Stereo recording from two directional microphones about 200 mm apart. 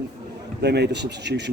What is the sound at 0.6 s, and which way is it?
Speech, 55° right (ahead or behind).